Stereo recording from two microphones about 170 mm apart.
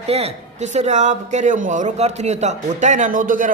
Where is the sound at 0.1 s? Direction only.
35° right (ahead or behind).